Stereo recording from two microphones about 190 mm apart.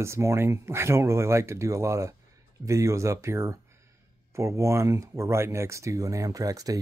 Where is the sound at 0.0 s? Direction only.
15° right (ahead or behind).